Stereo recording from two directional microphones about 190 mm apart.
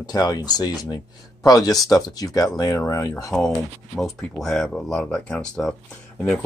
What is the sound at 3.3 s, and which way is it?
Speech, centre (ahead or behind).